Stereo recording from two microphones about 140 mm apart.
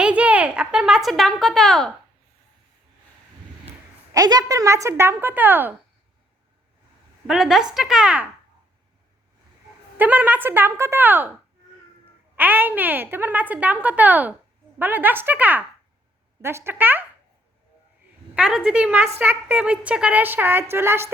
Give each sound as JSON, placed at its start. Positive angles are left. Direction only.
{"t": 0.0, "sound": "speech", "side_deg": -10}
{"t": 4.1, "sound": "speech", "side_deg": -25}
{"t": 7.3, "sound": "speech", "side_deg": 0}
{"t": 10.0, "sound": "speech", "side_deg": -10}
{"t": 12.4, "sound": "speech", "side_deg": -15}
{"t": 18.3, "sound": "speech", "side_deg": -10}